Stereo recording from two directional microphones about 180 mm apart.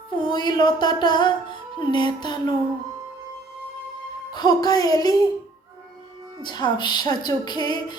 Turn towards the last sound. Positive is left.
turn(degrees=25)  # may be behind; listen again after turning